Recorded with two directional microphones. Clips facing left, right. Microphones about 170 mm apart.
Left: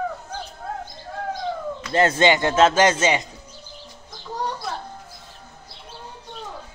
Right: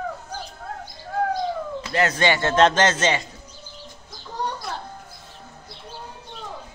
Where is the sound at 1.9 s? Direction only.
25° left (ahead or behind).